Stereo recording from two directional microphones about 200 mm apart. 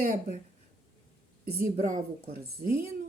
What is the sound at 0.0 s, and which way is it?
Speech, 45° right (ahead or behind).